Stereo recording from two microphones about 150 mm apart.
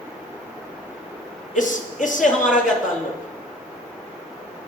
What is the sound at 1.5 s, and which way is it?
A man's voice, 60° left (ahead or behind).